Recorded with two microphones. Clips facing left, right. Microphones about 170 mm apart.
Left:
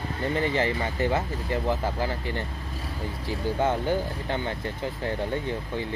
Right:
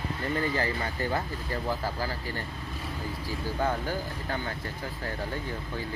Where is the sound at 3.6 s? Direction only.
25° left (ahead or behind).